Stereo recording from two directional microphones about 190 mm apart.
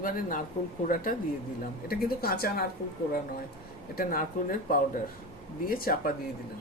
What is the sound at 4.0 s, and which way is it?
Speech, 45° left (ahead or behind).